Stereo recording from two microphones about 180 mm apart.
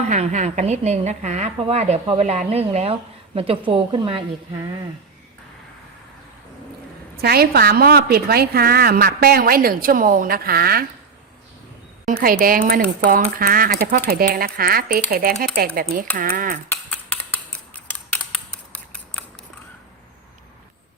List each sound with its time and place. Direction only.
0.0 s speech: 40° right (ahead or behind)
7.2 s a woman's voice: 60° right (ahead or behind)
12.0 s a woman's voice: 50° right (ahead or behind)
16.6 s scissors: 10° left (ahead or behind)